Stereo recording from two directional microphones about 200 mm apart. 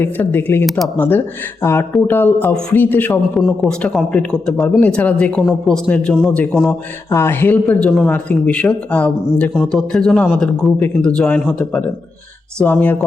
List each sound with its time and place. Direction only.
0.0 s a man's voice: 10° left (ahead or behind)